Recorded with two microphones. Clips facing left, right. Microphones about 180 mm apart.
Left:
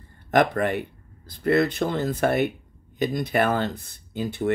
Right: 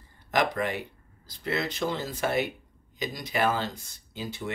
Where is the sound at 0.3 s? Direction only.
55° left (ahead or behind).